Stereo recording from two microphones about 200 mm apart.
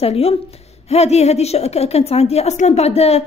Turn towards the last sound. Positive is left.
turn(degrees=30)  # may be behind; listen again after turning